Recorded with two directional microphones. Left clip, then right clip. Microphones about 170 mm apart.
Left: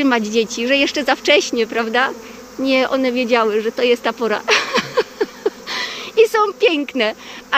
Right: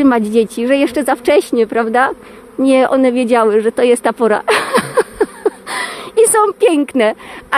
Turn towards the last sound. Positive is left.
turn(degrees=-45)  # may be behind; listen again after turning